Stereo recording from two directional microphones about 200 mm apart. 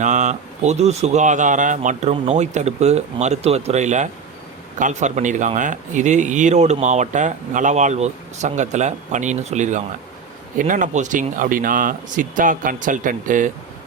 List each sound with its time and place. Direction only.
0.0 s speech: 35° right (ahead or behind)